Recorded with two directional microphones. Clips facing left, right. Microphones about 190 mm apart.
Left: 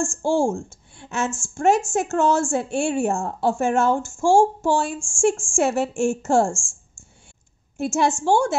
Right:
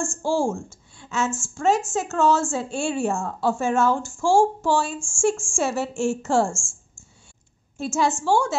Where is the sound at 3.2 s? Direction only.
25° left (ahead or behind).